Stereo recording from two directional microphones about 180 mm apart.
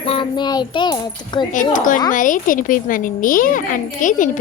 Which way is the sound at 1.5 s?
45° left (ahead or behind).